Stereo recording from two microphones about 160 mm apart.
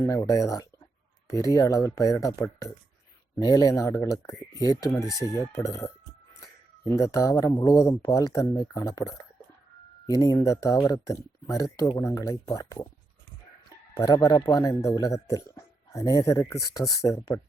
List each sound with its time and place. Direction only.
0.0 s a man's voice: 20° left (ahead or behind)